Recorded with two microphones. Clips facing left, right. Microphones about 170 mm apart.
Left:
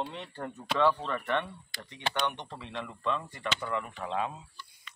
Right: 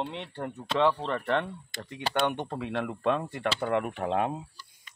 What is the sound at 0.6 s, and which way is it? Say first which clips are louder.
Speech: right 2 dB; 25° right (ahead or behind).